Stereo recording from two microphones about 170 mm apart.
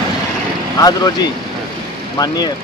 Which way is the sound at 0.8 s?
20° left (ahead or behind).